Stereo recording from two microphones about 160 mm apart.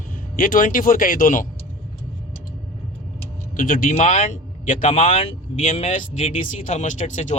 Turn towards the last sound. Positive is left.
turn(degrees=50)  # may be behind; listen again after turning